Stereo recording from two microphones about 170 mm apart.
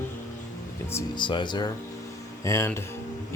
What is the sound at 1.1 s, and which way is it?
Speech, 25° left (ahead or behind).